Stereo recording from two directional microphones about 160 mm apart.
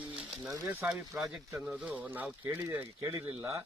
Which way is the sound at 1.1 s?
Centre (ahead or behind).